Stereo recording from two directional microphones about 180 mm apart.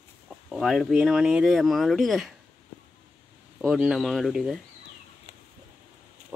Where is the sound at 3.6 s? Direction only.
5° right (ahead or behind).